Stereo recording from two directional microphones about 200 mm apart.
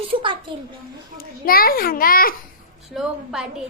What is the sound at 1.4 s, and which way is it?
Speech, 45° left (ahead or behind).